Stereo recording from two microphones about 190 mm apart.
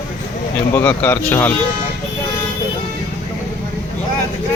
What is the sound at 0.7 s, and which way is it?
Speech, 10° left (ahead or behind).